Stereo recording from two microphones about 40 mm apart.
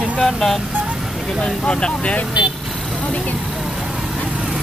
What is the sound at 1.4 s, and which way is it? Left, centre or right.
Speech, left.